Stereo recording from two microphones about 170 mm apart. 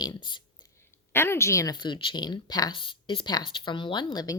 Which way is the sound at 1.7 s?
25° left (ahead or behind).